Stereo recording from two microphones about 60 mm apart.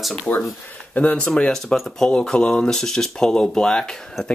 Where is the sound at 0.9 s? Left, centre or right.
Left.